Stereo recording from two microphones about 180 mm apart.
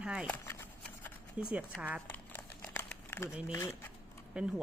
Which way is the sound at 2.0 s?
10° left (ahead or behind).